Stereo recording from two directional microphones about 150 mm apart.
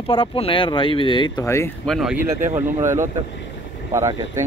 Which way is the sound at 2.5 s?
15° right (ahead or behind).